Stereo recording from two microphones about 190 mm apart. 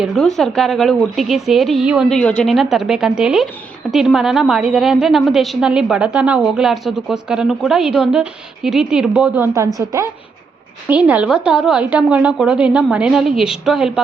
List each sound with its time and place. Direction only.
0.0 s a woman's voice: centre (ahead or behind)